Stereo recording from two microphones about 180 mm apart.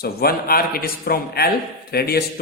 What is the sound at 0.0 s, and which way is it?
A man's voice, 60° left (ahead or behind).